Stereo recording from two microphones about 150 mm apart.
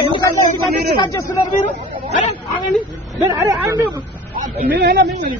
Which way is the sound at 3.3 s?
25° right (ahead or behind).